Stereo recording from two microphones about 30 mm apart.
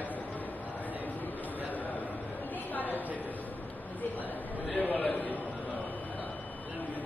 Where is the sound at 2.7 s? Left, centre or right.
Left.